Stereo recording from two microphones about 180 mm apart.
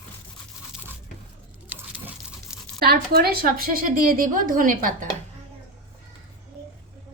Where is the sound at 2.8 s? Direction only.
60° right (ahead or behind).